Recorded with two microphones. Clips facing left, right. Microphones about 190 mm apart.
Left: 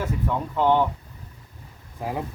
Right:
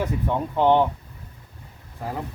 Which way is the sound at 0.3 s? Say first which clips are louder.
Right 2 dB; 20° right (ahead or behind).